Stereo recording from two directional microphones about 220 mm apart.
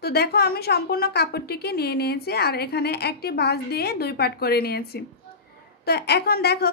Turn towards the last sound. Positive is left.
turn(degrees=45)  # may be behind; listen again after turning